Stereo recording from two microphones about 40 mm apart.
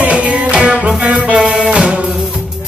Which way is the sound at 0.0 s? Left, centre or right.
Right.